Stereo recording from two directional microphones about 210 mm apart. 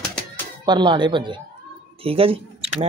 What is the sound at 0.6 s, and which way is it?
Speech, 20° right (ahead or behind).